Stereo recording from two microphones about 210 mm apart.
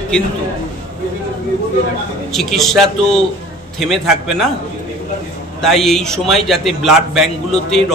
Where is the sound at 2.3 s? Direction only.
Centre (ahead or behind).